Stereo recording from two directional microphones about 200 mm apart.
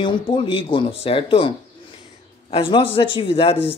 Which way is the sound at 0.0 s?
25° left (ahead or behind).